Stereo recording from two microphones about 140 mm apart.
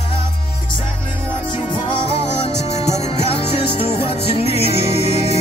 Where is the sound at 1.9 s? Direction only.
45° left (ahead or behind).